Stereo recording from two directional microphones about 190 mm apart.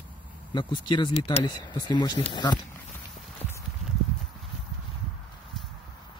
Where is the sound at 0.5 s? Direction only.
25° left (ahead or behind).